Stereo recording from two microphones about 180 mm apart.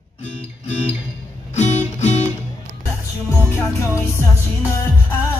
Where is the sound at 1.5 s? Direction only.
40° left (ahead or behind).